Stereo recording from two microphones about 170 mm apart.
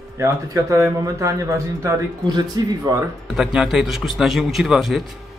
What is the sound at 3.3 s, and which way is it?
A man's voice, centre (ahead or behind).